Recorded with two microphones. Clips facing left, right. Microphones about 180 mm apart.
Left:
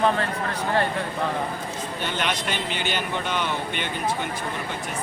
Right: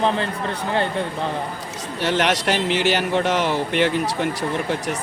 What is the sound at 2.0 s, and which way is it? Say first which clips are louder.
Speech: right 9 dB; 75° right (ahead or behind).